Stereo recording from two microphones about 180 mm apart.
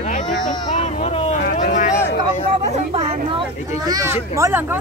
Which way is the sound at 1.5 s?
45° left (ahead or behind).